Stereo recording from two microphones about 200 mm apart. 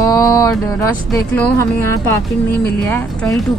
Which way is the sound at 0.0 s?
15° left (ahead or behind).